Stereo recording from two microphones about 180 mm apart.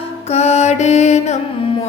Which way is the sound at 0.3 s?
35° left (ahead or behind).